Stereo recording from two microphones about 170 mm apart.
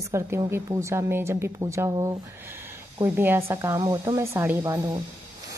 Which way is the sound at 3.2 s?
15° right (ahead or behind).